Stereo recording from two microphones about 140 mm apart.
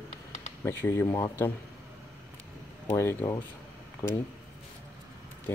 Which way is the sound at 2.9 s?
15° left (ahead or behind).